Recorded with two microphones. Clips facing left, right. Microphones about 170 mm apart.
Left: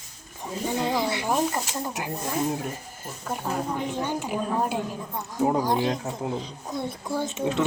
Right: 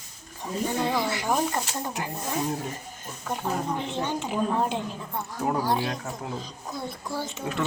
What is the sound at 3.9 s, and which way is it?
A woman's voice, 10° left (ahead or behind).